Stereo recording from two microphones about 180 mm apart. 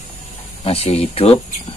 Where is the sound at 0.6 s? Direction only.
35° left (ahead or behind).